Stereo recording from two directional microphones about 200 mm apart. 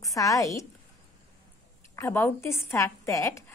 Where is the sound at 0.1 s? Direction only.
15° left (ahead or behind).